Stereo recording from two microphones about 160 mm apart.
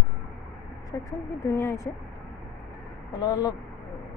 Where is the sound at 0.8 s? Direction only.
20° left (ahead or behind).